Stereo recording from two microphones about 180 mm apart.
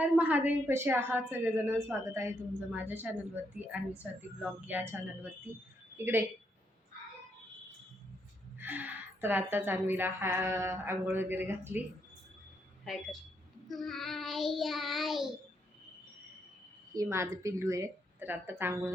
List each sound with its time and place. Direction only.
0.0 s a woman's voice: 10° right (ahead or behind)
8.5 s a woman's voice: 10° right (ahead or behind)
12.8 s speech: centre (ahead or behind)
13.7 s child singing: centre (ahead or behind)
16.9 s a woman's voice: 15° right (ahead or behind)